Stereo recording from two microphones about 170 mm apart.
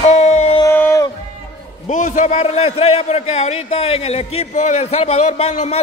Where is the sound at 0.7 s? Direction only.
15° left (ahead or behind).